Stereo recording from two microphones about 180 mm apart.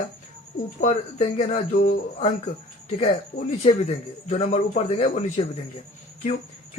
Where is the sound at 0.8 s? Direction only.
40° left (ahead or behind).